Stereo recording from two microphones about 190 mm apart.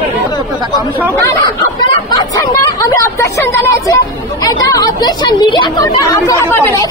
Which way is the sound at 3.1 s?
15° left (ahead or behind).